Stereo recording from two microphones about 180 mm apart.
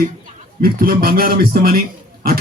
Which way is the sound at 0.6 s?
55° right (ahead or behind).